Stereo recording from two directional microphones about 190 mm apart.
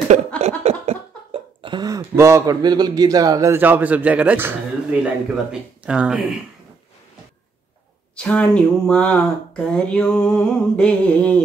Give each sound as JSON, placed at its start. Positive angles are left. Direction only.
{"t": 0.4, "sound": "speech", "side_deg": -35}
{"t": 8.2, "sound": "speech", "side_deg": 5}